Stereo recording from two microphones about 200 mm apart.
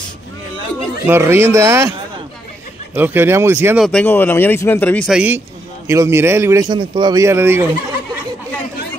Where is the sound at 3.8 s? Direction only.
10° left (ahead or behind).